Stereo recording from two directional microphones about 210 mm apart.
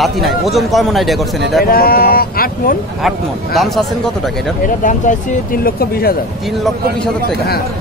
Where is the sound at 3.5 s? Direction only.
Centre (ahead or behind).